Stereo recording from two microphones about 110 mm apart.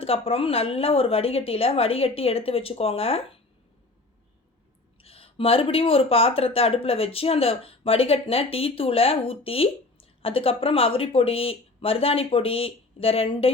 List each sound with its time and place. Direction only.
0.0 s speech: 60° left (ahead or behind)
5.0 s speech: 60° left (ahead or behind)